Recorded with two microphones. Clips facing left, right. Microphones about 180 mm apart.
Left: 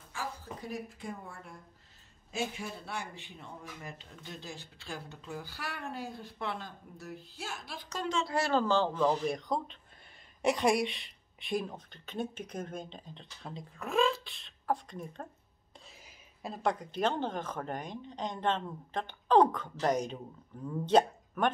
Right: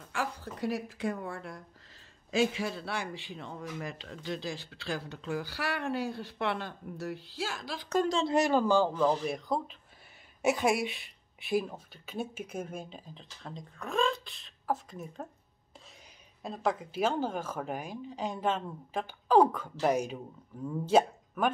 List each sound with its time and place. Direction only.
0.1 s a woman's voice: 75° right (ahead or behind); by 7.9 s 90° right
8.1 s speech: 30° right (ahead or behind)
8.4 s a woman's voice: 15° right (ahead or behind)
16.4 s a woman's voice: centre (ahead or behind)